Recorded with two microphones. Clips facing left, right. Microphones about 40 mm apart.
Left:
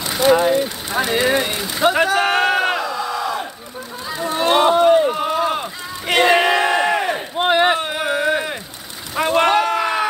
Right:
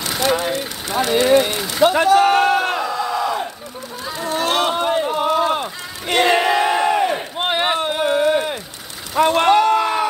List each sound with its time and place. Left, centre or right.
0.3 s speech: centre
2.8 s crowd: centre
4.1 s run: centre
4.7 s a sound: centre
6.1 s battle cry: centre
7.2 s battle cry: centre
7.7 s a sound: centre
9.1 s vehicle: centre
9.8 s a sound: centre